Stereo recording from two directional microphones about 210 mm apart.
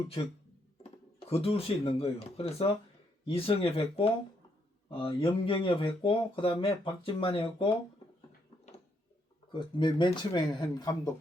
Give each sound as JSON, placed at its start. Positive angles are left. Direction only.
{"t": 0.2, "sound": "speech", "side_deg": 25}
{"t": 9.5, "sound": "speech", "side_deg": 20}